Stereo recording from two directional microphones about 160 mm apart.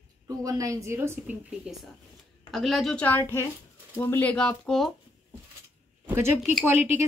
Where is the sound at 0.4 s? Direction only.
20° right (ahead or behind).